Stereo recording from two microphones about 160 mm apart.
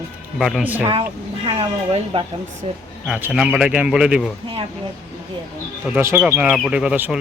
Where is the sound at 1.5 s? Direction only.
35° right (ahead or behind).